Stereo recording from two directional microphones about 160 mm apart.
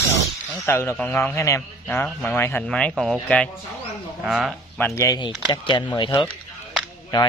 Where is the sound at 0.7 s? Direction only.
15° left (ahead or behind); by 4.6 s centre (ahead or behind).